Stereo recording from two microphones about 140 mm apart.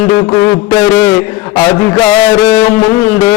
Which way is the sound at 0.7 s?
15° left (ahead or behind).